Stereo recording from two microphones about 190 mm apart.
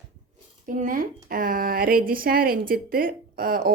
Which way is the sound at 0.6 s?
45° right (ahead or behind).